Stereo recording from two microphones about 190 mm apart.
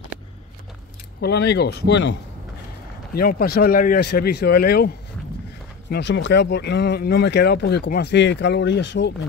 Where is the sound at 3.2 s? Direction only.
50° left (ahead or behind).